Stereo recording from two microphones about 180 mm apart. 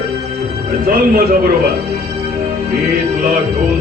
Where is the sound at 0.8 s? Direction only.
55° right (ahead or behind).